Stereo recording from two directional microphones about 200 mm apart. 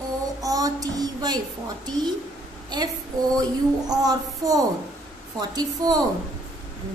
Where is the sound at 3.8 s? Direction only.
20° right (ahead or behind).